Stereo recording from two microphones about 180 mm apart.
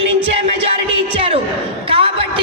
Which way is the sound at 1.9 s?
30° right (ahead or behind).